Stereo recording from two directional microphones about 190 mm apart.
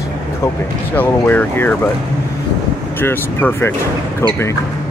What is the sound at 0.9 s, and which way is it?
Speech, 10° left (ahead or behind).